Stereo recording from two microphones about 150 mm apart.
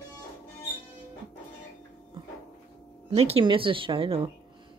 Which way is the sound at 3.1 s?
40° right (ahead or behind).